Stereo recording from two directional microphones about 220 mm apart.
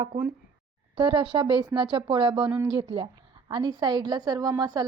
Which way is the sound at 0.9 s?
20° right (ahead or behind).